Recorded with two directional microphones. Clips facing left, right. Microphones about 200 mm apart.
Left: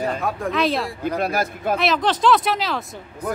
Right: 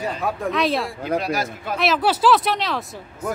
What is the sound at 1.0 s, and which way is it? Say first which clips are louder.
Speech: left 1 dB; 50° left (ahead or behind).